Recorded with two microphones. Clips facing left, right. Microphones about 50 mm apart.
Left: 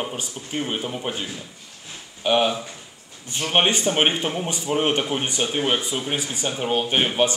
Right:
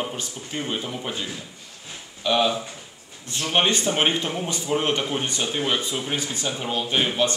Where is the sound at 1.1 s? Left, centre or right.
Left.